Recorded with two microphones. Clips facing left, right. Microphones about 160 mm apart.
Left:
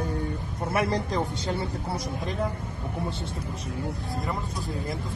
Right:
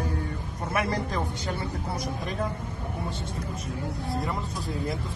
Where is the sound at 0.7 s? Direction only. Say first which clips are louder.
Left 2 dB; 20° left (ahead or behind).